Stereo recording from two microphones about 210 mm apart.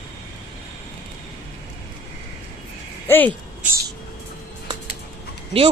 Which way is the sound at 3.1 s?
10° left (ahead or behind).